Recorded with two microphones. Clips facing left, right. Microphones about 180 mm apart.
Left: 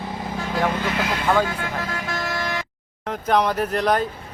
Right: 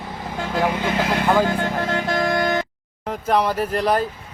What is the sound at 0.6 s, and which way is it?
Speech, 20° right (ahead or behind).